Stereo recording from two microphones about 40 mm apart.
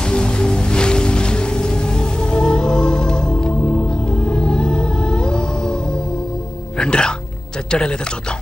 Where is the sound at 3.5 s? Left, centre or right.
Left.